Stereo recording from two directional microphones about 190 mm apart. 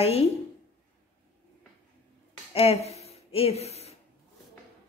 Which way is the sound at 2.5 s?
30° left (ahead or behind).